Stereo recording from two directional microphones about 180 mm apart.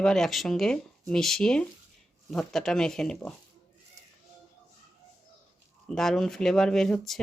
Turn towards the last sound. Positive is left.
turn(degrees=5)  # may be behind; listen again after turning